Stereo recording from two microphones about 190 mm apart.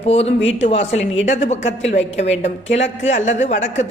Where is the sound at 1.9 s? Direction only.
70° left (ahead or behind).